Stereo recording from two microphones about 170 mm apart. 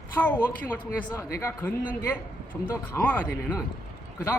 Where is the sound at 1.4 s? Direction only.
15° left (ahead or behind).